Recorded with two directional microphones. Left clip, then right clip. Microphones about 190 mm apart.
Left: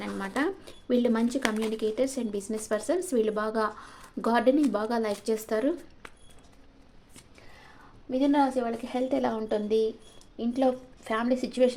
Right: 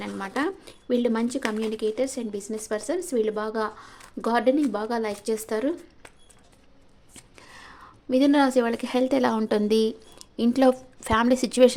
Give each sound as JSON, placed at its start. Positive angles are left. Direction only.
{"t": 0.0, "sound": "speech", "side_deg": -10}
{"t": 7.2, "sound": "a sound", "side_deg": -35}
{"t": 8.1, "sound": "a woman's voice", "side_deg": -50}